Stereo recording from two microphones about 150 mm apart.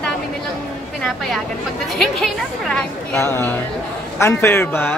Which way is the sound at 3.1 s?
15° left (ahead or behind).